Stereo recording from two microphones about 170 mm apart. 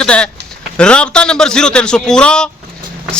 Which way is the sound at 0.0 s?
5° left (ahead or behind).